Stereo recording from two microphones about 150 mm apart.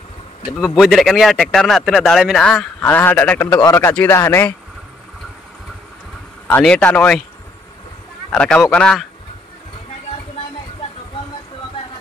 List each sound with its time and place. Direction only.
0.6 s a man's voice: centre (ahead or behind); by 4.6 s 15° left (ahead or behind)
6.4 s a man's voice: 5° left (ahead or behind)
8.3 s a man's voice: 5° left (ahead or behind)